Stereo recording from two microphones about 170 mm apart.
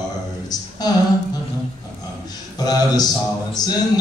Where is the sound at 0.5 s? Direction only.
25° left (ahead or behind).